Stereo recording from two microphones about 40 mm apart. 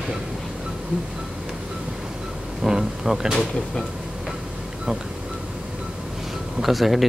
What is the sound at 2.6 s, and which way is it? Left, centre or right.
Speech, centre.